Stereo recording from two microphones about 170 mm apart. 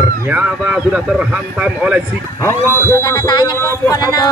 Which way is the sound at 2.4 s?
15° left (ahead or behind).